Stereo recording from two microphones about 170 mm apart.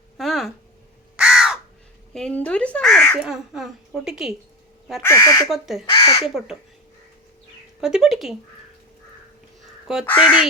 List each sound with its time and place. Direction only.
0.2 s a sound: centre (ahead or behind)
1.2 s crow: 5° right (ahead or behind)
2.1 s speech: 5° left (ahead or behind)
3.2 s a woman's voice: 5° right (ahead or behind)
5.0 s speech: 20° left (ahead or behind)
5.5 s a woman's voice: centre (ahead or behind)
5.8 s speech: 25° left (ahead or behind)
6.2 s a woman's voice: centre (ahead or behind)
7.8 s a woman's voice: 5° right (ahead or behind)
9.8 s speech: centre (ahead or behind)